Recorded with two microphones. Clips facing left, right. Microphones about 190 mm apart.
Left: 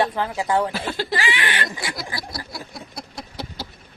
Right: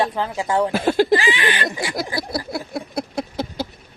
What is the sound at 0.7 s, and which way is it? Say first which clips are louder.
Speech: right 10 dB; 50° right (ahead or behind).